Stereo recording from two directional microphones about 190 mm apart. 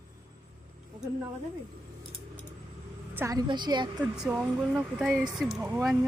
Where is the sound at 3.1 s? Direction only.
15° right (ahead or behind).